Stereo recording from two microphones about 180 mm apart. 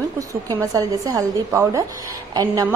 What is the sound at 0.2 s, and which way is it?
A woman's voice, 15° right (ahead or behind).